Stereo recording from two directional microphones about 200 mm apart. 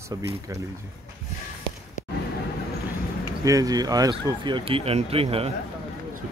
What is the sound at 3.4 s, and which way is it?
Speech, 15° right (ahead or behind).